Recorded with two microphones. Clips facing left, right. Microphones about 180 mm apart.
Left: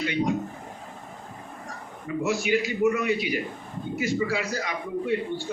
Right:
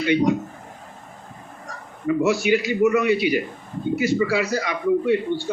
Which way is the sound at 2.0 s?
80° right.